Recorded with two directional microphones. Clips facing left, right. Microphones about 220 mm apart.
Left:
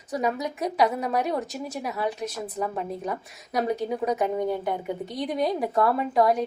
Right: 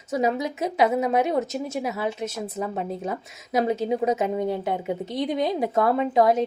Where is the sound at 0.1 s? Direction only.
25° right (ahead or behind).